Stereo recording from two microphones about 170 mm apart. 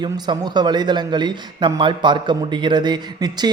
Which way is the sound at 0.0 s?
25° right (ahead or behind).